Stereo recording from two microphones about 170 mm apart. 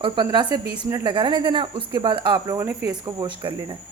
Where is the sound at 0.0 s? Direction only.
25° right (ahead or behind).